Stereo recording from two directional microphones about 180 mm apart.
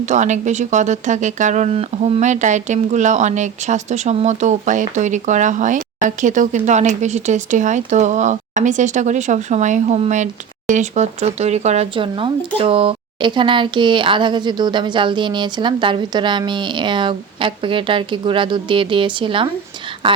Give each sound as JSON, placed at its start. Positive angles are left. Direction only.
{"t": 0.0, "sound": "speech", "side_deg": -40}